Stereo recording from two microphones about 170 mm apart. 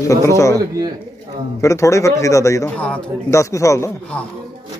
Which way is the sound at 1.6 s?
20° left (ahead or behind).